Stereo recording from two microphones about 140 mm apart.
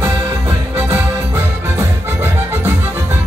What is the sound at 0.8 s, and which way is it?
Music, 20° right (ahead or behind).